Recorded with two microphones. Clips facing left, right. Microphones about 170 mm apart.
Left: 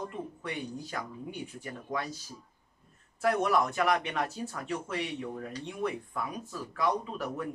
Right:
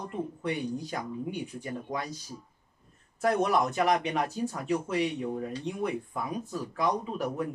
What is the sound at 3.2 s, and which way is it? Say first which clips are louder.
Speech: right 1 dB; 20° right (ahead or behind).